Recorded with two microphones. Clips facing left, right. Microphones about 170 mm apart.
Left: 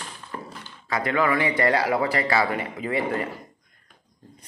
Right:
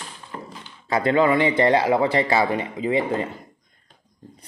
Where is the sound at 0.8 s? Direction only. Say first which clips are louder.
Right 5 dB; 25° right (ahead or behind).